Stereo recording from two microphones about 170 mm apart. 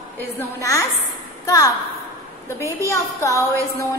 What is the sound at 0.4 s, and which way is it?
A woman's voice, 20° left (ahead or behind).